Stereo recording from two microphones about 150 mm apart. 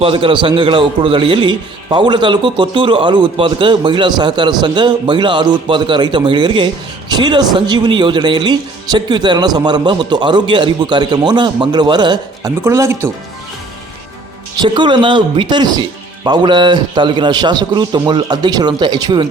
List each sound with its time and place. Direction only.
0.0 s a man's voice: 35° right (ahead or behind); by 13.1 s 20° right (ahead or behind)
14.6 s a man's voice: 30° right (ahead or behind)